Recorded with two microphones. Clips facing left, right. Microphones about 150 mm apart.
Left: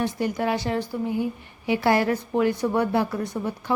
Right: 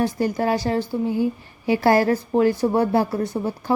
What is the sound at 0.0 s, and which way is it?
A woman's voice, 35° right (ahead or behind).